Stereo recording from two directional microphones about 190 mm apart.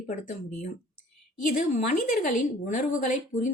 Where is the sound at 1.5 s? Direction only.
45° left (ahead or behind).